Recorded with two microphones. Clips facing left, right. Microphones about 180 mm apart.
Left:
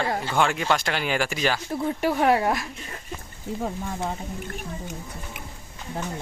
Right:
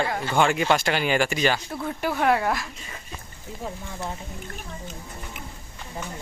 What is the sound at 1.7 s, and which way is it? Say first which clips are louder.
Speech: left 3 dB; 20° left (ahead or behind).